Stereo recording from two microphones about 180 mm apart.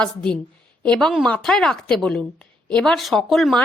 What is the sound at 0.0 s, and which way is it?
A woman's voice, 5° left (ahead or behind).